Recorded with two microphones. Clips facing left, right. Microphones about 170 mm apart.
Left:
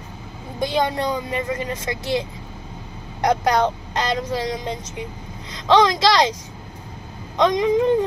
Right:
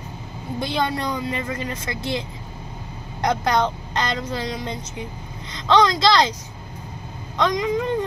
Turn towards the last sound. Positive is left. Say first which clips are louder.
# left 5 dB
turn(degrees=20)  # may be behind; listen again after turning